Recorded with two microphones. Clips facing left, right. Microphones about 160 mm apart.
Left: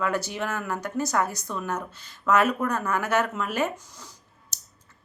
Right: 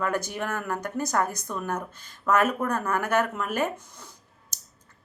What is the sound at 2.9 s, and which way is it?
Speech, 50° right (ahead or behind).